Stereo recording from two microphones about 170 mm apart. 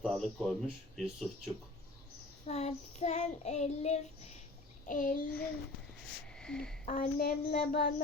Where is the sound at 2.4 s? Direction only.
40° left (ahead or behind).